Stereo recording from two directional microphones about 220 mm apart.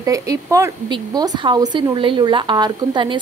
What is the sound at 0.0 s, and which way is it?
Speech, 15° right (ahead or behind).